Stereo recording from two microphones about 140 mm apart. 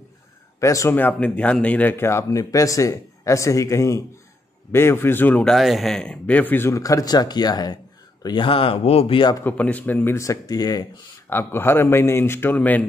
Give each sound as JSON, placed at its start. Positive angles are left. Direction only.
{"t": 0.6, "sound": "a man's voice", "side_deg": 20}
{"t": 9.4, "sound": "a man's voice", "side_deg": 10}
{"t": 11.2, "sound": "a man's voice", "side_deg": 15}